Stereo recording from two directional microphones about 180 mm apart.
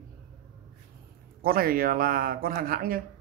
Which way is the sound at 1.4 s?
55° right (ahead or behind).